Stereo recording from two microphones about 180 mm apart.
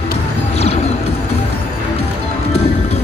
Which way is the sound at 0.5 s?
35° left (ahead or behind).